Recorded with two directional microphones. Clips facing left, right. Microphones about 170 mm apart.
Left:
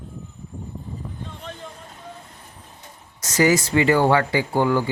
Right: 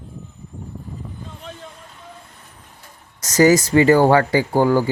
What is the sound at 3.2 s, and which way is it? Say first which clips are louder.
Speech: right 5 dB; 40° right (ahead or behind).